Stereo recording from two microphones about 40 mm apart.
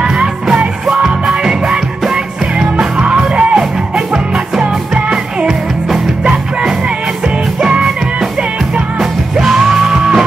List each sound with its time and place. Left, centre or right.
0.0 s music: centre
1.0 s music: centre
7.7 s music: centre
9.4 s music: centre